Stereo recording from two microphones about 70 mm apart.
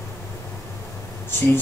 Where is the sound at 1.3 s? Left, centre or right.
Left.